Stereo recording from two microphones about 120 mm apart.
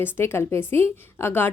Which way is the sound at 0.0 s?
20° left (ahead or behind).